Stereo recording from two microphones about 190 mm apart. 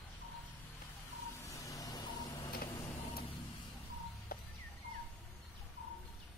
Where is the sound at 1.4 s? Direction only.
15° left (ahead or behind).